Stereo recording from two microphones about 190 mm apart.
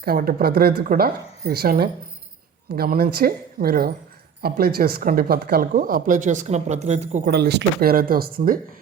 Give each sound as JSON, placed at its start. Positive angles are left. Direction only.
{"t": 0.0, "sound": "speech", "side_deg": -50}
{"t": 7.3, "sound": "speech", "side_deg": -60}